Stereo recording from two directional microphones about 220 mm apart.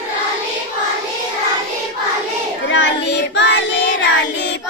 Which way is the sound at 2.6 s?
50° left (ahead or behind).